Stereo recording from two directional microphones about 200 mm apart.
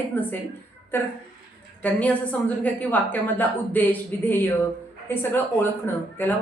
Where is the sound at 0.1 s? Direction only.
10° left (ahead or behind).